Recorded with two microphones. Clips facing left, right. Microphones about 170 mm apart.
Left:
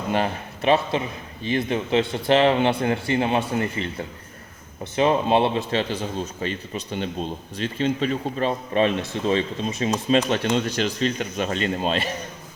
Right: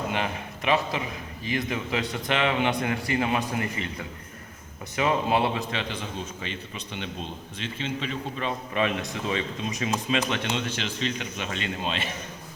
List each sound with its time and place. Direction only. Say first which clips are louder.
0.1 s a man's voice: left 6 dB; 35° left (ahead or behind)